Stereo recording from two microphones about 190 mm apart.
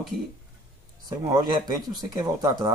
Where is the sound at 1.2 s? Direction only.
20° right (ahead or behind).